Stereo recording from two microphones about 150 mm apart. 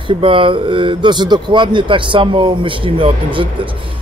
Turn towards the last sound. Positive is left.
turn(degrees=-35)  # may be behind; listen again after turning